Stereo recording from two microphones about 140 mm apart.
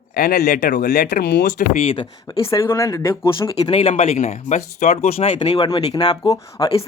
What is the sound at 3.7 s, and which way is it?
Speech, 50° left (ahead or behind).